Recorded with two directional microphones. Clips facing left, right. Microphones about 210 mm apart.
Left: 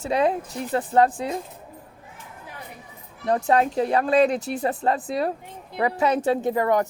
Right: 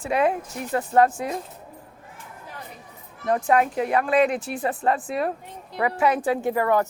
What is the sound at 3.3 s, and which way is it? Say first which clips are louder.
Speech: even; 35° left (ahead or behind).